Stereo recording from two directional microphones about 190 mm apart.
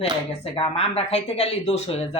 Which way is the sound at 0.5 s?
30° left (ahead or behind).